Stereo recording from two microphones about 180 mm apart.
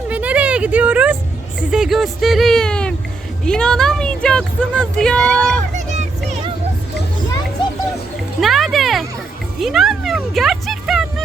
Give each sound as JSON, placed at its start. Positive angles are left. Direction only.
{"t": 0.1, "sound": "a sound", "side_deg": -10}
{"t": 1.7, "sound": "speech", "side_deg": 0}
{"t": 5.7, "sound": "music", "side_deg": -40}
{"t": 8.4, "sound": "music", "side_deg": 0}